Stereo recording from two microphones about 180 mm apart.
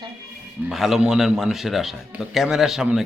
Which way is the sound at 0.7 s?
Centre (ahead or behind).